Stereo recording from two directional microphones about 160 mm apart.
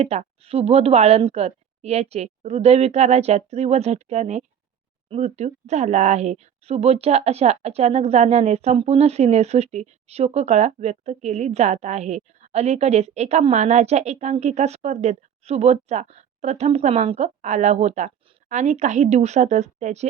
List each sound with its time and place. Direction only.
0.0 s a woman's voice: 40° right (ahead or behind)